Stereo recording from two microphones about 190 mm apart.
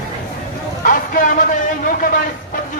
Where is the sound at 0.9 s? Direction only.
45° left (ahead or behind).